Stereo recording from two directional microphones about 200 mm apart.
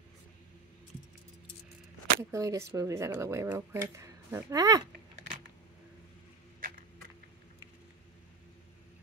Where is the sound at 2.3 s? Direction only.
15° right (ahead or behind).